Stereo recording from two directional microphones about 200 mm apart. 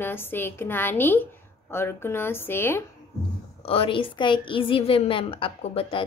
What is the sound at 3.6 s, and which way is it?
Speech, 30° left (ahead or behind).